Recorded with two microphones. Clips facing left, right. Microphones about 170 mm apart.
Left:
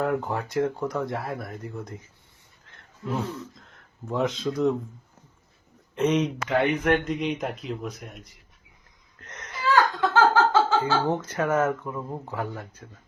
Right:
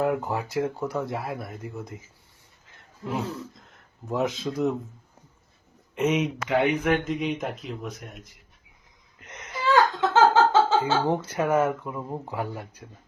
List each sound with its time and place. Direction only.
0.0 s speech: 5° right (ahead or behind)
2.7 s roaring cats: 10° right (ahead or behind)
3.7 s speech: 5° right (ahead or behind)
5.9 s speech: 5° right (ahead or behind)
9.2 s a sound: 10° right (ahead or behind)
11.1 s speech: 10° right (ahead or behind)